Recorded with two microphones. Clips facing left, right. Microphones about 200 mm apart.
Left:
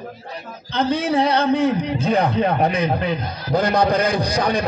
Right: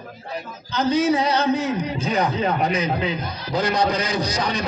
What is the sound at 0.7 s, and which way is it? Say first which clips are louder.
A man's voice: right 1 dB; 60° left (ahead or behind).